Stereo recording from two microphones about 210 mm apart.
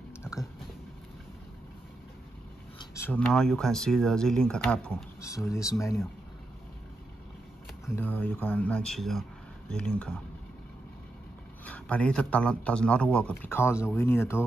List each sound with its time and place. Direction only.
0.2 s a sound: 15° left (ahead or behind)
2.8 s speech: 15° left (ahead or behind)
7.8 s speech: 10° left (ahead or behind)
11.6 s speech: 5° left (ahead or behind)